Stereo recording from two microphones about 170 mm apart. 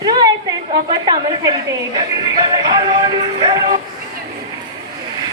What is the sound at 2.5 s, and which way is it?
Music, 25° right (ahead or behind).